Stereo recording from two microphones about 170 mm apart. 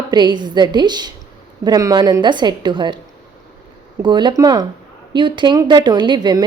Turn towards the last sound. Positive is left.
turn(degrees=-25)  # may be behind; listen again after turning